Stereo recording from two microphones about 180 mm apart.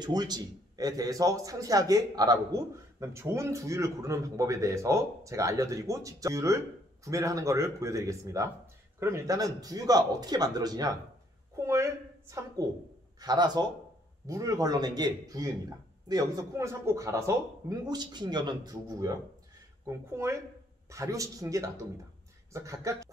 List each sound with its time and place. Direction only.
0.0 s a man's voice: 25° right (ahead or behind)
11.5 s a sound: 15° right (ahead or behind)
13.2 s a man's voice: 20° right (ahead or behind)
20.2 s speech: 15° right (ahead or behind)